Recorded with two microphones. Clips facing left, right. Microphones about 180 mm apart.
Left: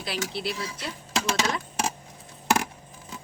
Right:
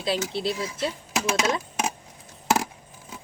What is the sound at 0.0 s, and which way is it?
Speech, 25° right (ahead or behind).